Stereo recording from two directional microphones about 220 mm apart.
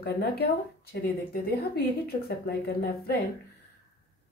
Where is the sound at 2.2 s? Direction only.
45° left (ahead or behind).